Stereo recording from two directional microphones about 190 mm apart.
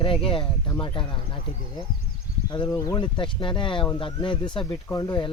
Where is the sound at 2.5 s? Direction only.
20° left (ahead or behind).